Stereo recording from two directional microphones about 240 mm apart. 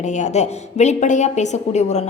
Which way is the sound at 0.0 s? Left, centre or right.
Left.